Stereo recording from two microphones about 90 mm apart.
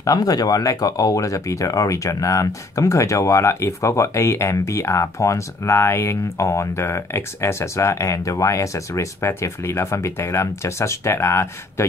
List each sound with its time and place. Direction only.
0.0 s speech: 45° left (ahead or behind)